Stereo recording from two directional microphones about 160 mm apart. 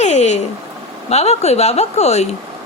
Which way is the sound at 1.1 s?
40° left (ahead or behind).